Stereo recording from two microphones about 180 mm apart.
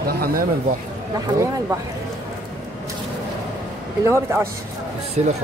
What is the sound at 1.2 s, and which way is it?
Speech, 15° right (ahead or behind).